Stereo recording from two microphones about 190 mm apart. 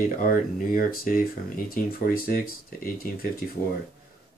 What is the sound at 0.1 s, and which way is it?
Speech, 45° left (ahead or behind).